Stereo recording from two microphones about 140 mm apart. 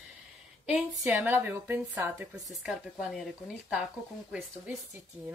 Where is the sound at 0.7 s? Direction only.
10° right (ahead or behind).